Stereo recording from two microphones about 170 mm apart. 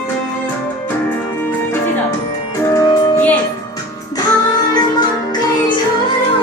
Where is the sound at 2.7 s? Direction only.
10° left (ahead or behind).